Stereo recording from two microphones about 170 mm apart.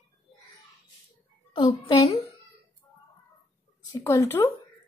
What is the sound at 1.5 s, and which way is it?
Speech, 25° left (ahead or behind).